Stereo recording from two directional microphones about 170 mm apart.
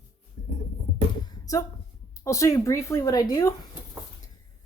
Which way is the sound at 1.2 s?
20° left (ahead or behind).